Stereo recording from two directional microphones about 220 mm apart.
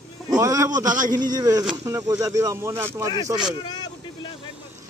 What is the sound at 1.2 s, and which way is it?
Speech, 20° right (ahead or behind).